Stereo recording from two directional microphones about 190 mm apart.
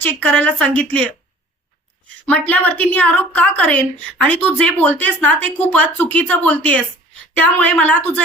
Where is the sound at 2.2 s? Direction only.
10° left (ahead or behind).